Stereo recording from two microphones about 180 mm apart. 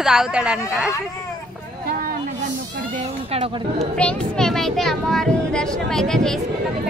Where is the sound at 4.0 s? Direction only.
5° left (ahead or behind).